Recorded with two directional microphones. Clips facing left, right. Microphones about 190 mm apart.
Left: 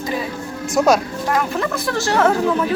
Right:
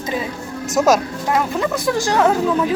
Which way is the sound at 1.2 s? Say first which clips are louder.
Right 2 dB; 15° right (ahead or behind).